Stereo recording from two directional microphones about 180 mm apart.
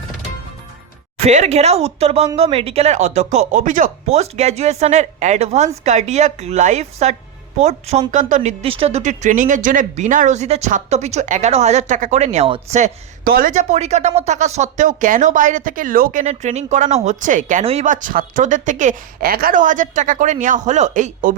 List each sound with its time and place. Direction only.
1.2 s speech: 40° right (ahead or behind)
13.2 s speech: 55° right (ahead or behind)